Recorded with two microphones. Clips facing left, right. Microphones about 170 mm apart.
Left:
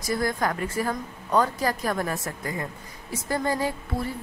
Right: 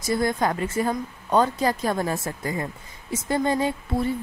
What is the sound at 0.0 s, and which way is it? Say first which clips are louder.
A woman's voice: right 3 dB; 25° right (ahead or behind).